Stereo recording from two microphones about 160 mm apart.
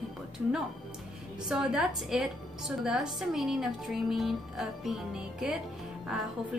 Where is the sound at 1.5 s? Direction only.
5° right (ahead or behind).